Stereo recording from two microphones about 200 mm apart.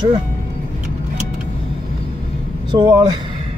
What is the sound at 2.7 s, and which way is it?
Speech, 20° right (ahead or behind).